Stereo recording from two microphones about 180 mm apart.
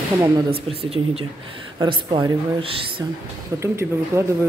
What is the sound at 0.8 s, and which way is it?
Speech, 30° right (ahead or behind).